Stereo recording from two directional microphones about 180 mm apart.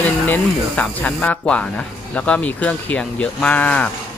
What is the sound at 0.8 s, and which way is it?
Speech, 10° left (ahead or behind).